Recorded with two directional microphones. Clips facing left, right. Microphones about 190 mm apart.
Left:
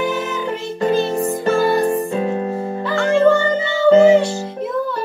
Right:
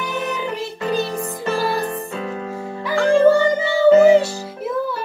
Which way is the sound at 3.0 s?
35° right (ahead or behind).